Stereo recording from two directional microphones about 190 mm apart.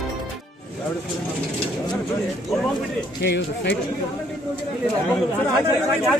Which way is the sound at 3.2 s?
60° left (ahead or behind).